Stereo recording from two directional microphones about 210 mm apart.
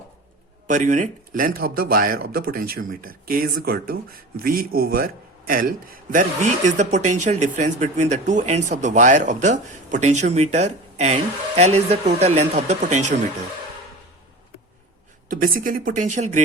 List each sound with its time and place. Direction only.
0.7 s speech: 35° right (ahead or behind)
15.3 s speech: 40° right (ahead or behind)